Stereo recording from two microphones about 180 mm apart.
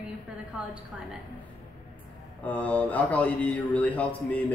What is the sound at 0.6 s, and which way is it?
Speech, 5° right (ahead or behind).